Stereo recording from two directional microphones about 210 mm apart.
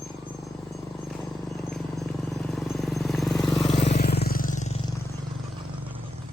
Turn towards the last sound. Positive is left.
turn(degrees=35)  # may be behind; listen again after turning